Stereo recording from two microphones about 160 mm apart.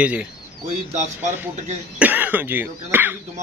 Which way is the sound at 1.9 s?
10° right (ahead or behind).